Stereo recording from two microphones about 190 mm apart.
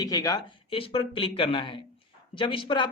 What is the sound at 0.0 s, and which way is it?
A man's voice, 20° left (ahead or behind).